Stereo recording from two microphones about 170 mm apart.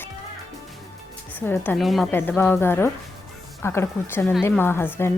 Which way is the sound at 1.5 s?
10° left (ahead or behind).